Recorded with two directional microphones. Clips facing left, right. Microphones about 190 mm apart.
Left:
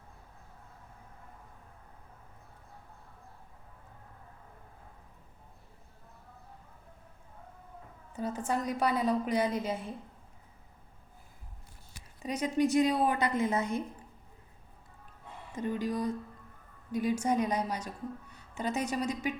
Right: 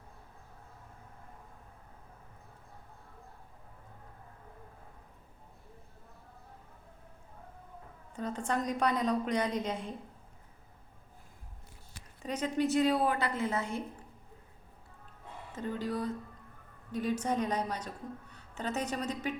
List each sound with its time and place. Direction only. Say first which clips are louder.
8.1 s a woman's voice: left 1 dB; 5° left (ahead or behind)
12.2 s a woman's voice: left 2 dB; 10° left (ahead or behind)
15.5 s a woman's voice: left 3 dB; 15° left (ahead or behind)